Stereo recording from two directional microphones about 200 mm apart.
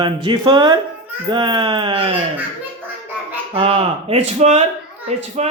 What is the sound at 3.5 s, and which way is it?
Speech, 30° right (ahead or behind).